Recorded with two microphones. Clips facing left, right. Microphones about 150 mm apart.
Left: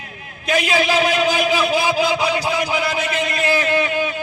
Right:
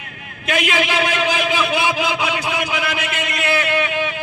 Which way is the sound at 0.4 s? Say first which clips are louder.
Left 2 dB; 35° left (ahead or behind).